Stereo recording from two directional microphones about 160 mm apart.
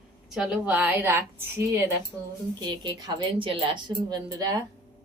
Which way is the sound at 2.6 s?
25° right (ahead or behind).